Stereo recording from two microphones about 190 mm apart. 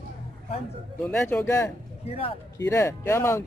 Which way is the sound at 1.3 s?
10° left (ahead or behind).